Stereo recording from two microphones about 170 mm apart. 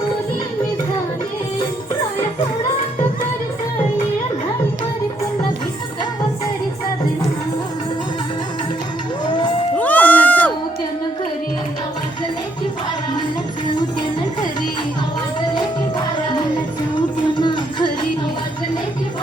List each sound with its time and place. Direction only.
9.2 s crowd: 25° left (ahead or behind)
9.7 s music: 10° left (ahead or behind)
17.3 s a sound: 25° left (ahead or behind)